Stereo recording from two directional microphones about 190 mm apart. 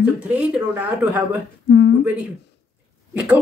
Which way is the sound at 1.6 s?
60° left (ahead or behind).